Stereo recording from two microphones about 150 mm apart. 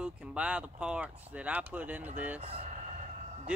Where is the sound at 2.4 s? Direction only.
40° right (ahead or behind).